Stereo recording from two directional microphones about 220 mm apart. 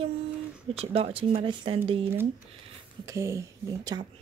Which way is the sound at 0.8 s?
25° right (ahead or behind).